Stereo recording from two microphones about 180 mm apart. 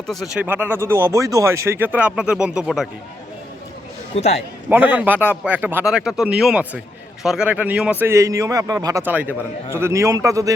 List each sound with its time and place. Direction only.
0.1 s a man's voice: centre (ahead or behind)
4.1 s a man's voice: 35° left (ahead or behind)
4.4 s a man's voice: 10° right (ahead or behind)